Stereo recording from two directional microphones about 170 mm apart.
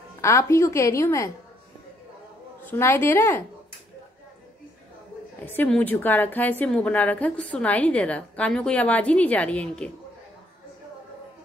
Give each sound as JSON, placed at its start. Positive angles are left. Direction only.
{"t": 0.2, "sound": "a woman's voice", "side_deg": 15}
{"t": 2.6, "sound": "a woman's voice", "side_deg": 15}
{"t": 5.4, "sound": "a woman's voice", "side_deg": 10}